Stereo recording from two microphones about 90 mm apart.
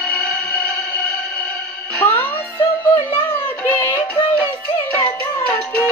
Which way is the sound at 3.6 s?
20° left (ahead or behind).